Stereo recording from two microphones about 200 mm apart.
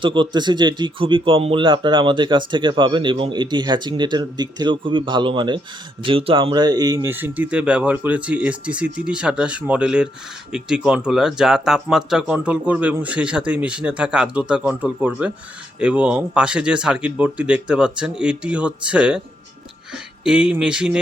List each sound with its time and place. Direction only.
0.0 s speech: 25° right (ahead or behind); by 21.0 s 5° right (ahead or behind)